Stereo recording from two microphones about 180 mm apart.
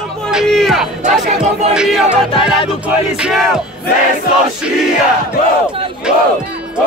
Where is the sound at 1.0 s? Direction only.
40° right (ahead or behind).